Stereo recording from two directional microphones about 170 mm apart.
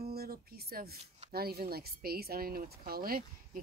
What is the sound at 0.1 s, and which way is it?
Speech, 65° right (ahead or behind).